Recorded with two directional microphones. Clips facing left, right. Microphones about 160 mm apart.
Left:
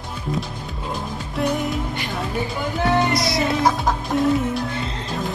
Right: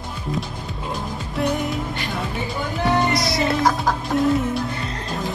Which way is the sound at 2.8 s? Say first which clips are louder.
Left 1 dB; centre (ahead or behind).